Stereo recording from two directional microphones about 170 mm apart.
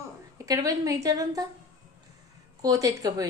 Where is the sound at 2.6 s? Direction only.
20° right (ahead or behind).